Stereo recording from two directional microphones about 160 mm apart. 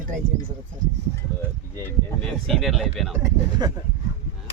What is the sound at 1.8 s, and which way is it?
Speech, 10° left (ahead or behind).